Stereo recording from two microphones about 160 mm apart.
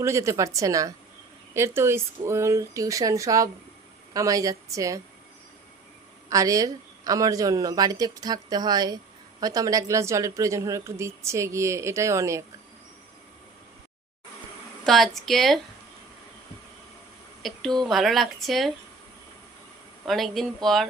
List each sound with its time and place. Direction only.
0.0 s a woman's voice: 20° right (ahead or behind)
6.2 s a woman's voice: 20° right (ahead or behind)
14.8 s speech: centre (ahead or behind)
17.4 s speech: centre (ahead or behind)
20.1 s speech: centre (ahead or behind)